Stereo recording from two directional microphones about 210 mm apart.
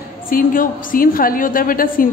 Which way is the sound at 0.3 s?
40° left (ahead or behind).